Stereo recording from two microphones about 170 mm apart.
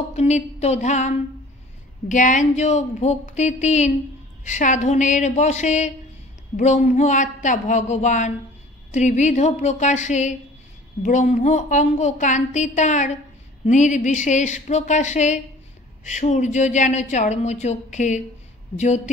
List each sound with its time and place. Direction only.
0.1 s a woman's voice: 40° left (ahead or behind)